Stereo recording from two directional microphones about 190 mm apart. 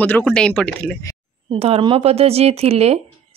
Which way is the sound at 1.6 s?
30° right (ahead or behind).